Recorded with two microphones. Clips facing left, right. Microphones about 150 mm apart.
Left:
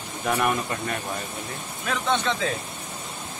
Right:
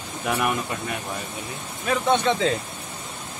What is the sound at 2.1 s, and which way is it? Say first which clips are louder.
Speech: right 4 dB; 20° right (ahead or behind).